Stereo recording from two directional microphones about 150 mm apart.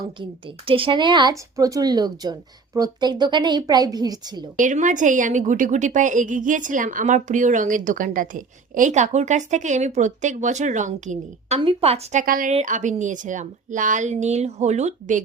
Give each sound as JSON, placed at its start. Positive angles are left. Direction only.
{"t": 0.0, "sound": "a woman's voice", "side_deg": -35}
{"t": 4.5, "sound": "a woman's voice", "side_deg": -60}
{"t": 12.2, "sound": "speech", "side_deg": -70}
{"t": 12.6, "sound": "a woman's voice", "side_deg": -55}